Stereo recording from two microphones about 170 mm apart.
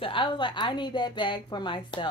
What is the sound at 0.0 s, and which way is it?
A woman's voice, 30° left (ahead or behind).